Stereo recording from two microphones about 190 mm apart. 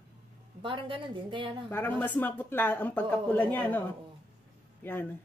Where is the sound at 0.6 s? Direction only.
25° right (ahead or behind).